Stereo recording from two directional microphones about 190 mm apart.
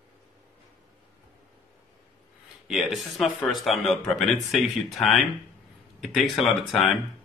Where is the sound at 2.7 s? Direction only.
Centre (ahead or behind).